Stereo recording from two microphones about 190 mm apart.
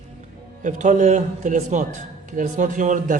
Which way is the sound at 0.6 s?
40° right (ahead or behind).